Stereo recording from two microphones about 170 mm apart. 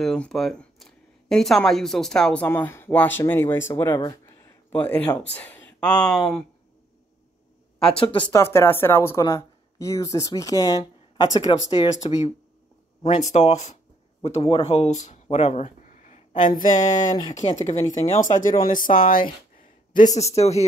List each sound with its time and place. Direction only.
0.0 s speech: 5° left (ahead or behind)
7.9 s speech: 30° left (ahead or behind)
8.3 s speech: 15° left (ahead or behind)
13.3 s speech: 40° left (ahead or behind)